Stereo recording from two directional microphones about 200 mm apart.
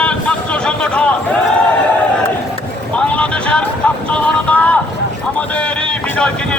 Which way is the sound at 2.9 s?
5° left (ahead or behind).